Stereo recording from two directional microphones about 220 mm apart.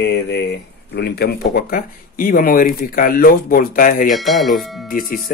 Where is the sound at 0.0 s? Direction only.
50° left (ahead or behind).